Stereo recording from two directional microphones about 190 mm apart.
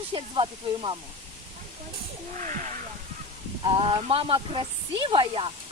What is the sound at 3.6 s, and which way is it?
Speech, 25° right (ahead or behind).